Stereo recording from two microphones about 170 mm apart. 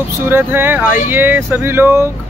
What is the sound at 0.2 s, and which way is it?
Speech, 15° right (ahead or behind).